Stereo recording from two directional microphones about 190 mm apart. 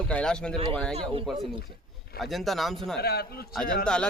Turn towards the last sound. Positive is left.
turn(degrees=5)  # may be behind; listen again after turning